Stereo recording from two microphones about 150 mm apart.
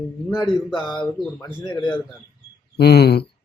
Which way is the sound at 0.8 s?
30° left (ahead or behind).